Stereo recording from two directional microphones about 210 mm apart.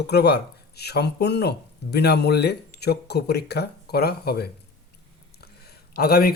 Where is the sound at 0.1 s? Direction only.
50° left (ahead or behind).